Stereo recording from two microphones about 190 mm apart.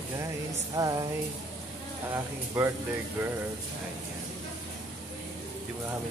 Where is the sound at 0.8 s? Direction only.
20° right (ahead or behind).